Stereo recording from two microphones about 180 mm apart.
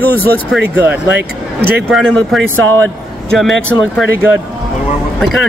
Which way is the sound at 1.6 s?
60° right (ahead or behind).